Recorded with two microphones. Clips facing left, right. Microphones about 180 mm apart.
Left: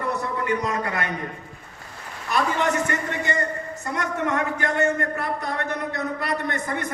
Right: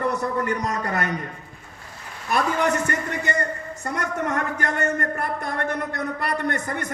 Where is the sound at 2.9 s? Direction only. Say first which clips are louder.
Even; 45° right (ahead or behind).